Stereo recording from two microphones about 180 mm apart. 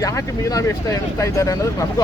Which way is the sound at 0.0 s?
15° left (ahead or behind).